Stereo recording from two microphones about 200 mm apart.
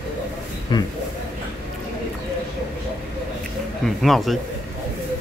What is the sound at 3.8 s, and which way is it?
Speech, centre (ahead or behind).